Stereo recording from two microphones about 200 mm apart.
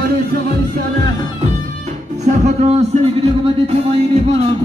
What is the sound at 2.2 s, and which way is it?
Music, 35° right (ahead or behind).